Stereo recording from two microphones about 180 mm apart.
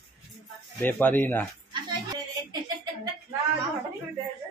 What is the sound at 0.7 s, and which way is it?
Speech, 10° left (ahead or behind).